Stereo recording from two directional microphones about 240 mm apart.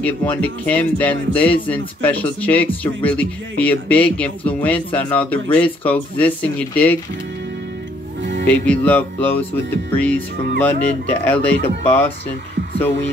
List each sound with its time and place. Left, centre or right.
0.0 s speech: centre
8.2 s music: right
8.5 s speech: centre